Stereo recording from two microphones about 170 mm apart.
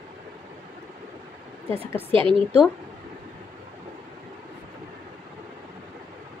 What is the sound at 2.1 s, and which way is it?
Speech, 30° right (ahead or behind).